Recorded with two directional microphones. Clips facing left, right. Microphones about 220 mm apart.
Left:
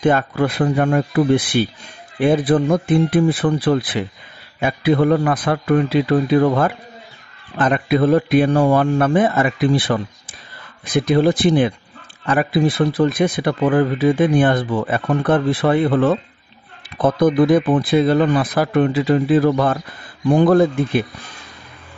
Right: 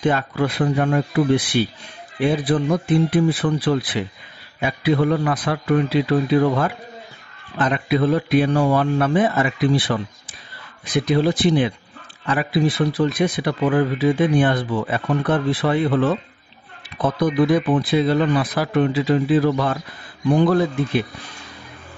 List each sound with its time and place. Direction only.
0.0 s speech: 50° left (ahead or behind)
7.5 s speech: 50° left (ahead or behind)